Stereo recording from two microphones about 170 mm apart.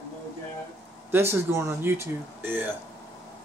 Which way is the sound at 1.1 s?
15° right (ahead or behind).